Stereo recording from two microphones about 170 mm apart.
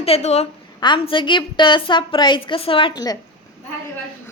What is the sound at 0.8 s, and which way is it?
A woman's voice, 30° left (ahead or behind).